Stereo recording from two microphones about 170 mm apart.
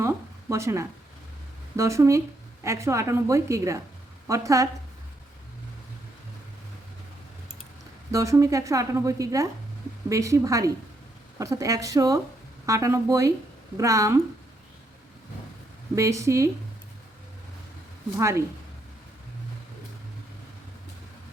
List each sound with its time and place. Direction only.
0.0 s a sound: 15° right (ahead or behind)
1.7 s a woman's voice: 20° right (ahead or behind)
8.1 s a woman's voice: 20° right (ahead or behind)
16.0 s a woman's voice: 20° right (ahead or behind)
18.2 s a woman's voice: 15° right (ahead or behind)